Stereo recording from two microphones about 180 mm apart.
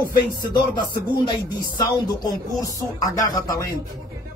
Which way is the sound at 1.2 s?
25° left (ahead or behind).